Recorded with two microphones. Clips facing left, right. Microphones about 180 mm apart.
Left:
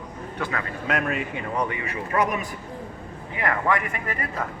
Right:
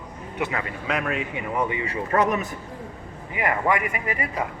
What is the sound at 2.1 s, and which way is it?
Speech, 40° right (ahead or behind).